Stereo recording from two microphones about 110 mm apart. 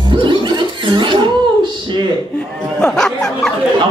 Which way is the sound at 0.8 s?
45° right (ahead or behind).